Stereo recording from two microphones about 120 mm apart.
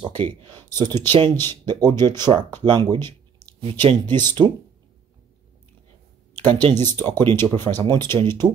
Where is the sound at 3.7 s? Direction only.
45° right (ahead or behind).